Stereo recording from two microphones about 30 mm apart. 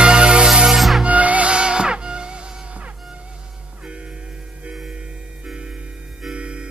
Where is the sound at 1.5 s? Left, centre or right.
Right.